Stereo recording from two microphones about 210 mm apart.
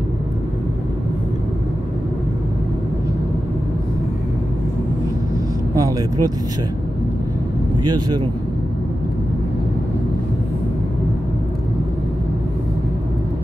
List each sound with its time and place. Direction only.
5.8 s speech: 15° right (ahead or behind)
7.8 s speech: 20° right (ahead or behind)